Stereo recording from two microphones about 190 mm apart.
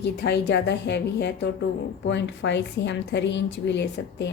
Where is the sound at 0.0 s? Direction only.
60° left (ahead or behind).